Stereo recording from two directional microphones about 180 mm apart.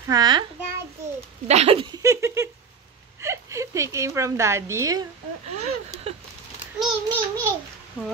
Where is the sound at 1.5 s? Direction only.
35° right (ahead or behind); by 5.0 s 15° right (ahead or behind).